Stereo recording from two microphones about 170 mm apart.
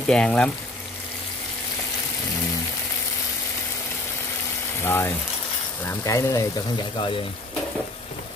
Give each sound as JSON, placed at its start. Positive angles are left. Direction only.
{"t": 0.0, "sound": "speech", "side_deg": 5}
{"t": 4.8, "sound": "speech", "side_deg": 15}